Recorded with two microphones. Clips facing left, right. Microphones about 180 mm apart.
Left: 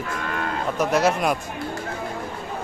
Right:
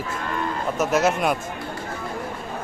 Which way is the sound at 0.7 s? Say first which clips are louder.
Even; 5° right (ahead or behind).